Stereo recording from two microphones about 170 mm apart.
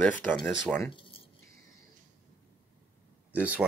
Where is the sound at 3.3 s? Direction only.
10° right (ahead or behind).